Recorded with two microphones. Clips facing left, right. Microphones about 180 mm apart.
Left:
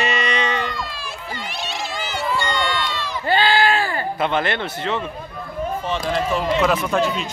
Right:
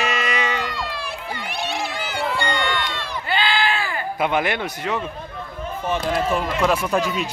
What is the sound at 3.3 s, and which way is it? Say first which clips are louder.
Sheep: left 5 dB; 45° left (ahead or behind).